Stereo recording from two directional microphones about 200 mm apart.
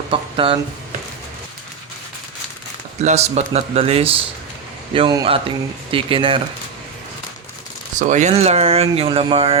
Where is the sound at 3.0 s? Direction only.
35° right (ahead or behind).